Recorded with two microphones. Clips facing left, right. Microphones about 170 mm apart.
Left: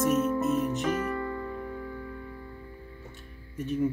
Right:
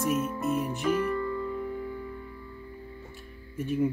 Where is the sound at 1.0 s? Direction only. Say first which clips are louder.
Right 3 dB; 50° left (ahead or behind).